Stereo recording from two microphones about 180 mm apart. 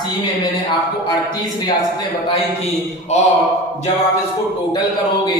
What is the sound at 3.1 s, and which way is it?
Speech, 40° left (ahead or behind).